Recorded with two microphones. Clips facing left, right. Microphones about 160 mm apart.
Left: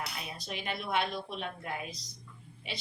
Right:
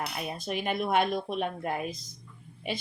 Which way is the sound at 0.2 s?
50° right (ahead or behind).